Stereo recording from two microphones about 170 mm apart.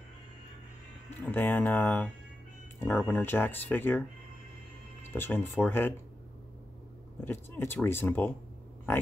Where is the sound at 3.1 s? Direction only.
10° left (ahead or behind).